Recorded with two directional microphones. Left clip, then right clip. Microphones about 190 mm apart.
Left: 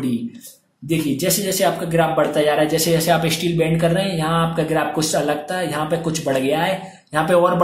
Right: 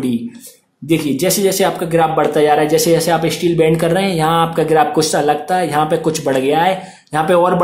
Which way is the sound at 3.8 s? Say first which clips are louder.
Right 5 dB; 25° right (ahead or behind).